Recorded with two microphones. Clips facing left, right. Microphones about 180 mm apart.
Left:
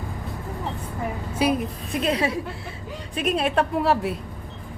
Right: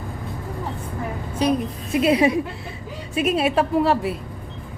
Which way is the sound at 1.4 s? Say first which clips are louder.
Right 2 dB; 10° left (ahead or behind).